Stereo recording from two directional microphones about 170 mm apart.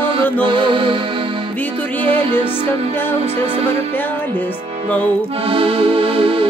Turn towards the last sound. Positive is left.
turn(degrees=-30)  # may be behind; listen again after turning